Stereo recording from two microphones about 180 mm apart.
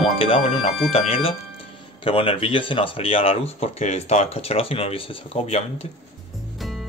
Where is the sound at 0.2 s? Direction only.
30° left (ahead or behind).